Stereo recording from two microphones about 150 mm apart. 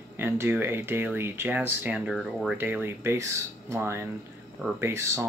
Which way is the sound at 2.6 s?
15° right (ahead or behind).